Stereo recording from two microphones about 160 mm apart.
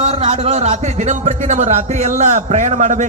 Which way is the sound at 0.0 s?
40° right (ahead or behind).